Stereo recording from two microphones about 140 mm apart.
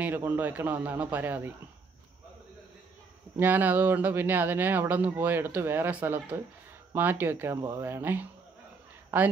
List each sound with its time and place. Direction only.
0.0 s speech: 15° right (ahead or behind)
3.3 s speech: 15° right (ahead or behind)